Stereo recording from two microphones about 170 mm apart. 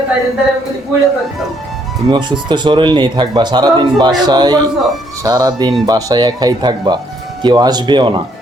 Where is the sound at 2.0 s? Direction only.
25° right (ahead or behind).